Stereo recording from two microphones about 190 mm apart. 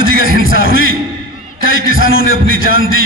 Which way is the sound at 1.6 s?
90° left.